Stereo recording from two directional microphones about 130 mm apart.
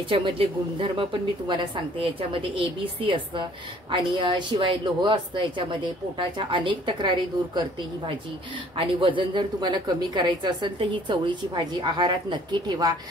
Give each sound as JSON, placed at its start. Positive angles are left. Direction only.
{"t": 0.1, "sound": "a woman's voice", "side_deg": -45}
{"t": 8.7, "sound": "a woman's voice", "side_deg": -40}